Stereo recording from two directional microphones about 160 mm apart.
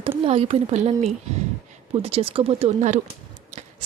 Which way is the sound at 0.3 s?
35° right (ahead or behind).